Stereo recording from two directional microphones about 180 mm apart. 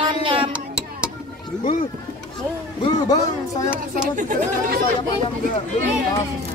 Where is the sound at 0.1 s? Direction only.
30° right (ahead or behind).